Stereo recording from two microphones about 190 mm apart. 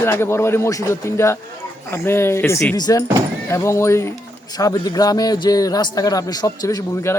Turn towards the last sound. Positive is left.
turn(degrees=20)  # may be behind; listen again after turning